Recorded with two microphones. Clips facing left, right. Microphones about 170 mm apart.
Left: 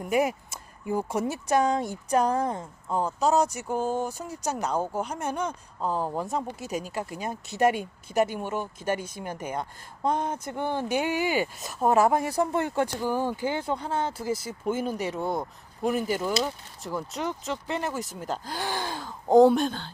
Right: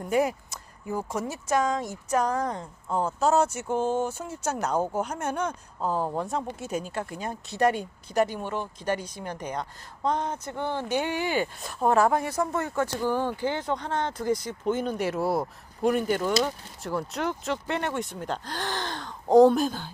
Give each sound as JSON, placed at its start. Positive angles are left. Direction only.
{"t": 0.0, "sound": "speech", "side_deg": 15}
{"t": 1.5, "sound": "speech", "side_deg": 30}
{"t": 2.5, "sound": "speech", "side_deg": 0}
{"t": 7.3, "sound": "speech", "side_deg": 20}
{"t": 7.8, "sound": "speech", "side_deg": 10}
{"t": 12.3, "sound": "speech", "side_deg": 30}
{"t": 12.8, "sound": "speech", "side_deg": 10}